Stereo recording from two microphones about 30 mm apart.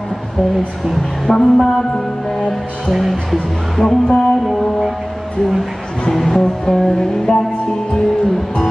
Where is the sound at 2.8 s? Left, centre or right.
Centre.